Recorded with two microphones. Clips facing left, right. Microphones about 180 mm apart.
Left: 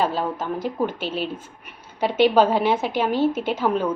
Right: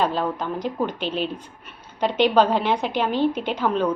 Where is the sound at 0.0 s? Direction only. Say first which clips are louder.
Even; 5° left (ahead or behind).